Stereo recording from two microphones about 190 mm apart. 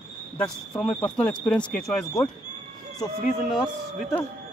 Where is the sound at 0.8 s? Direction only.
Centre (ahead or behind).